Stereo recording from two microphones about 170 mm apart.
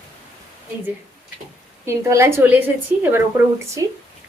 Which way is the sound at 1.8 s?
15° right (ahead or behind).